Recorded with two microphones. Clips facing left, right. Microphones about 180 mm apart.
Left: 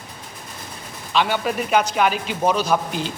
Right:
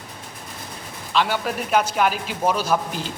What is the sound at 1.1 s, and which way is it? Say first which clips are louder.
A man's voice: left 2 dB; centre (ahead or behind).